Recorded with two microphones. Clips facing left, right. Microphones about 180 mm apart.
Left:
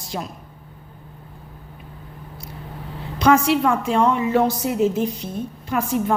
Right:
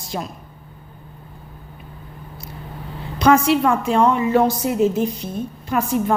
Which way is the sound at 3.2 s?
40° right (ahead or behind).